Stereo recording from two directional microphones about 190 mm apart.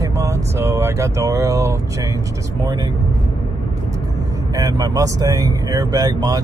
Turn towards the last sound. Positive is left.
turn(degrees=-20)  # may be behind; listen again after turning